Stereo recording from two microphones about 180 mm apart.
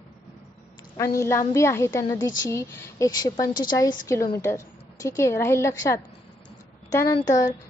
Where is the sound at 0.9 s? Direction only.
15° left (ahead or behind).